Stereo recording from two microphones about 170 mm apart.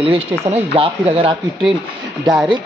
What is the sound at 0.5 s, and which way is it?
Speech, 35° right (ahead or behind).